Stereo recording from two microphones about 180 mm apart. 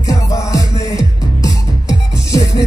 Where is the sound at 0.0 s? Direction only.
20° left (ahead or behind).